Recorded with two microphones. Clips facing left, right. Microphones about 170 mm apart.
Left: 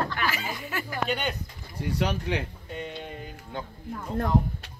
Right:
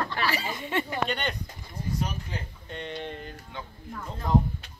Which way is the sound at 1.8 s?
80° left.